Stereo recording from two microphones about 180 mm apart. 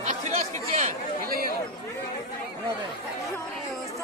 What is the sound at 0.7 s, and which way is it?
Chatter, 45° right (ahead or behind).